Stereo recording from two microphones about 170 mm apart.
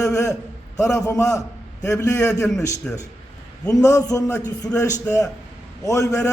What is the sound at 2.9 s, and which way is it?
Speech, 5° left (ahead or behind).